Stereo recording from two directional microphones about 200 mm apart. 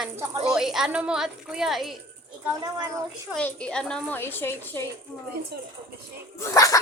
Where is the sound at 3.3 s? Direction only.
5° left (ahead or behind).